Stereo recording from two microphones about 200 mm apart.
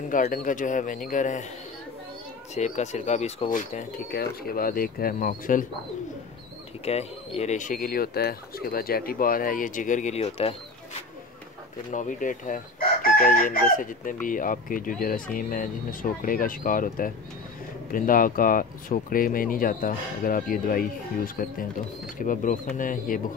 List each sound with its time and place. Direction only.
0.1 s speech: 40° left (ahead or behind)
2.5 s speech: 35° left (ahead or behind)
6.8 s speech: 30° left (ahead or behind)